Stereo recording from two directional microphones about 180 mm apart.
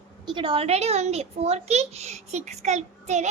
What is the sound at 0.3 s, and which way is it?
A woman's voice, 30° right (ahead or behind).